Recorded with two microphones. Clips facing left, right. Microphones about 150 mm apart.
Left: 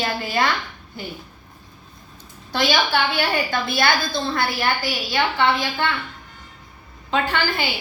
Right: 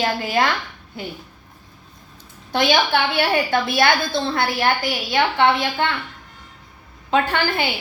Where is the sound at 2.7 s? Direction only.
60° right (ahead or behind).